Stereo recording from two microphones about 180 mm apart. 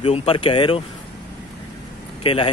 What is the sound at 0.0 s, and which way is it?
Speech, 35° left (ahead or behind).